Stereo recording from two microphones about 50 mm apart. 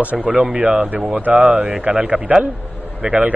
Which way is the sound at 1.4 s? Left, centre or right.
Centre.